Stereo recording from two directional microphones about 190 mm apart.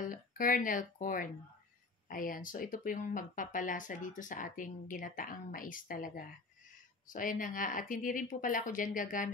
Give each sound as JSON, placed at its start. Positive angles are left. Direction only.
{"t": 0.0, "sound": "speech", "side_deg": 45}